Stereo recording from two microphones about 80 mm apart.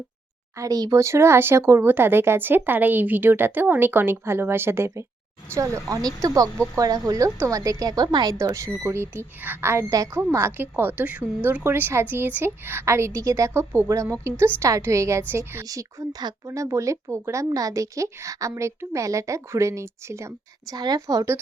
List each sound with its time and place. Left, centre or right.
0.5 s a woman's voice: right
5.5 s speech: right
8.3 s speech: right
9.9 s speech: right
10.2 s a woman's voice: right
20.7 s a woman's voice: right